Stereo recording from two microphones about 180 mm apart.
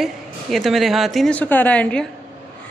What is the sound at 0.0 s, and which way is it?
A woman's voice, centre (ahead or behind).